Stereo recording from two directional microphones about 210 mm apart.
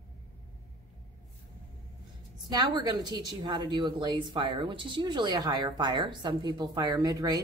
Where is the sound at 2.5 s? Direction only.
20° right (ahead or behind).